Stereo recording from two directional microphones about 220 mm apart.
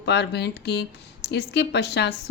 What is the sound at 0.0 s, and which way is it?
Speech, 50° left (ahead or behind).